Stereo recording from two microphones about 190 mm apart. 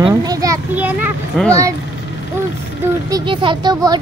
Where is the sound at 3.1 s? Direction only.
25° right (ahead or behind).